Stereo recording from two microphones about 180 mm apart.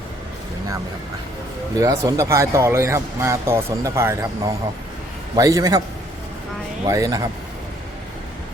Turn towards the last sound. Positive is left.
turn(degrees=-20)  # may be behind; listen again after turning